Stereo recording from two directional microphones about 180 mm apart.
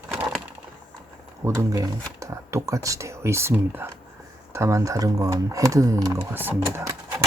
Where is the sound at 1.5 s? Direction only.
20° right (ahead or behind).